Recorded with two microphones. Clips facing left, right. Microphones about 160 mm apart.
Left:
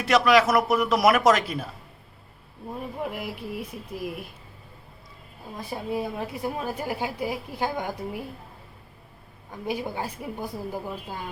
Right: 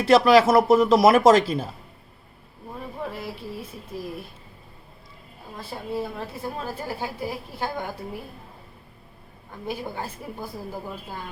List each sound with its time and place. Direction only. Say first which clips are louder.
0.0 s speech: right 4 dB; 30° right (ahead or behind)
3.0 s a woman's voice: right 1 dB; 15° left (ahead or behind)
5.5 s a woman's voice: left 1 dB; 15° left (ahead or behind)
9.6 s a woman's voice: left 2 dB; 15° left (ahead or behind)